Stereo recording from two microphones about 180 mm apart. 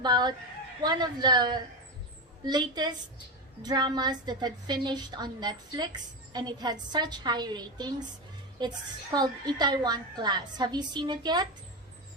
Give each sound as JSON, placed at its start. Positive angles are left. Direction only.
{"t": 0.0, "sound": "a woman's voice", "side_deg": -25}